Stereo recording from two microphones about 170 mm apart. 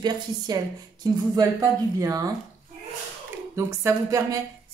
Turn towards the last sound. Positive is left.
turn(degrees=-20)  # may be behind; listen again after turning